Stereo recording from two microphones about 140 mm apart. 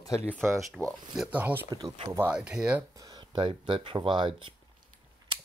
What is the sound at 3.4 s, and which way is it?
Speech, 40° right (ahead or behind).